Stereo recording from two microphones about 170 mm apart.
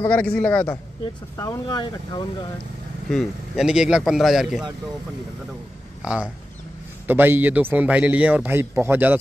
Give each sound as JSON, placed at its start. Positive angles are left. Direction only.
{"t": 0.0, "sound": "a man's voice", "side_deg": 10}
{"t": 1.3, "sound": "speech", "side_deg": 20}
{"t": 3.1, "sound": "a man's voice", "side_deg": 0}
{"t": 6.0, "sound": "a man's voice", "side_deg": -5}